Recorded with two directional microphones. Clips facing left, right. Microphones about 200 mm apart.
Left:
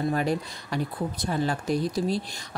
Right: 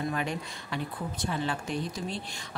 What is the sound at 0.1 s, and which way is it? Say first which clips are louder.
Speech: left 6 dB; 40° left (ahead or behind).